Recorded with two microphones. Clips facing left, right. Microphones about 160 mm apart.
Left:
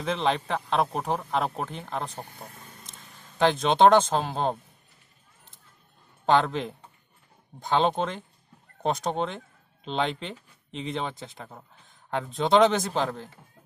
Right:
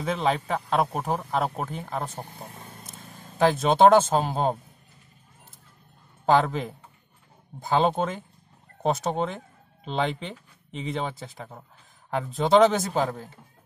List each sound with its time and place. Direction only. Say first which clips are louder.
0.0 s speech: right 1 dB; 5° right (ahead or behind)
2.5 s vehicle: right 4 dB; 50° right (ahead or behind)
3.3 s speech: right 1 dB; 5° right (ahead or behind)
6.2 s speech: right 1 dB; 5° right (ahead or behind)